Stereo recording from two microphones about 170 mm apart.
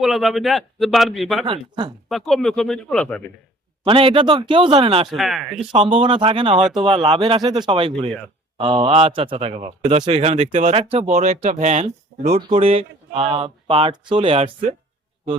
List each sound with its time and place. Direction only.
0.0 s a man's voice: centre (ahead or behind)
1.5 s a man's voice: 30° right (ahead or behind)
2.0 s a man's voice: centre (ahead or behind)
3.8 s speech: 30° right (ahead or behind)
5.0 s a man's voice: centre (ahead or behind)
5.7 s speech: 30° right (ahead or behind)
6.6 s a man's voice: 5° right (ahead or behind)
6.8 s a man's voice: 30° right (ahead or behind)